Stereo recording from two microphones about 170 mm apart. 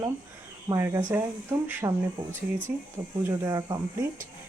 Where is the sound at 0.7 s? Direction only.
20° right (ahead or behind).